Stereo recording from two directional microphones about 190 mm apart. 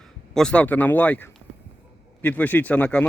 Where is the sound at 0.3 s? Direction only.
5° left (ahead or behind).